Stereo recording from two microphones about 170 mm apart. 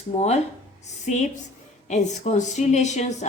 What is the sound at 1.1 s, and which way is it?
Speech, 45° left (ahead or behind).